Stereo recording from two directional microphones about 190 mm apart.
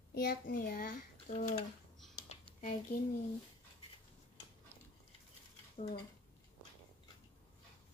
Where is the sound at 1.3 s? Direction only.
35° left (ahead or behind).